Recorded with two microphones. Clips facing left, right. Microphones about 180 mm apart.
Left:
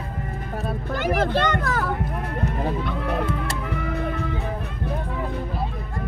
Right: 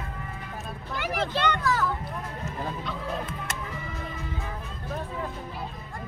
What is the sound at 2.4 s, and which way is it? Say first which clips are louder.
Music: left 9 dB; 60° left (ahead or behind).